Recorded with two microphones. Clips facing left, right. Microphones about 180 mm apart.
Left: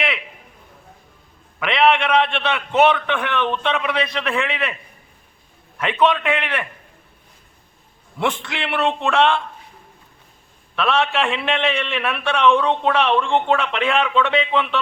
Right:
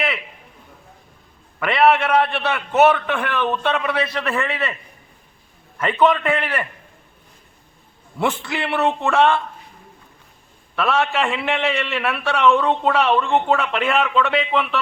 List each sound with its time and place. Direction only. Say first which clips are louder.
1.5 s a man's voice: right 1 dB; 5° right (ahead or behind)
5.7 s a man's voice: right 1 dB; centre (ahead or behind)
8.2 s a man's voice: right 1 dB; 5° right (ahead or behind)
10.8 s a man's voice: even; centre (ahead or behind)